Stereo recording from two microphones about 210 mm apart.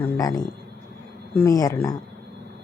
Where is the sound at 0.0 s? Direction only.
15° left (ahead or behind).